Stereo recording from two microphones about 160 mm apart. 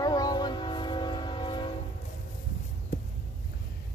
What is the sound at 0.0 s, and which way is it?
Train, 25° left (ahead or behind).